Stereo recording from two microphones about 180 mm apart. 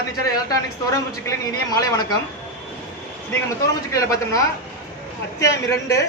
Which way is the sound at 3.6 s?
20° left (ahead or behind).